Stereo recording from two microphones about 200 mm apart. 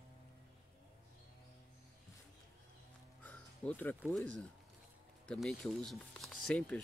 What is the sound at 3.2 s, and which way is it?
Speech, 10° left (ahead or behind).